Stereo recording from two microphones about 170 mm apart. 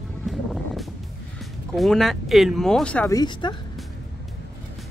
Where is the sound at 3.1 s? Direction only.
25° left (ahead or behind).